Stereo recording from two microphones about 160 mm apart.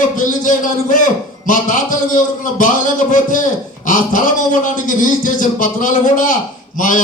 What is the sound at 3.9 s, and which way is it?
A man's voice, 55° left (ahead or behind).